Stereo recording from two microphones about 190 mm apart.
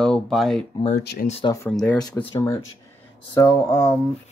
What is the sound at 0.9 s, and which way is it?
Speech, 55° left (ahead or behind).